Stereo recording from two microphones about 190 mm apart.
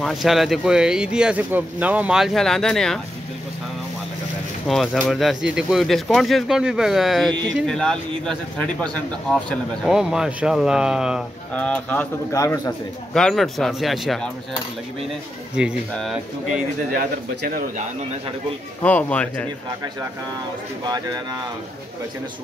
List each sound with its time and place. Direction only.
0.0 s speech: centre (ahead or behind)
4.6 s speech: centre (ahead or behind)
11.5 s speech: 5° left (ahead or behind)
13.1 s speech: centre (ahead or behind)
15.9 s speech: centre (ahead or behind)
16.9 s speech: 50° right (ahead or behind)
18.8 s speech: 10° left (ahead or behind)
20.9 s speech: 20° right (ahead or behind)